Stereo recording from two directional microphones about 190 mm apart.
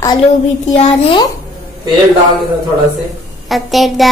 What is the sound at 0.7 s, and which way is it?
Speech, 35° left (ahead or behind).